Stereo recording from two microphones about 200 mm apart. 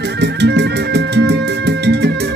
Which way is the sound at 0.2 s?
60° right (ahead or behind).